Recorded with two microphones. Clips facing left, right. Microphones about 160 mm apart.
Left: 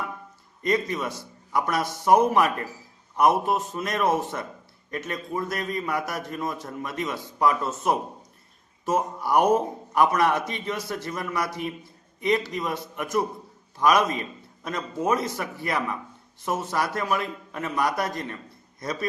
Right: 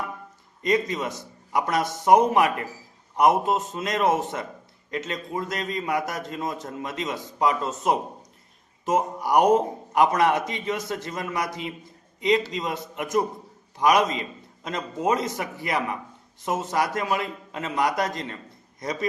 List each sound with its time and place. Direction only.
0.6 s a man's voice: 20° right (ahead or behind)